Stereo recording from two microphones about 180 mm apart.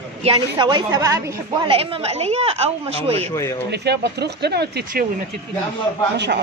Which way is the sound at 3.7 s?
70° right (ahead or behind).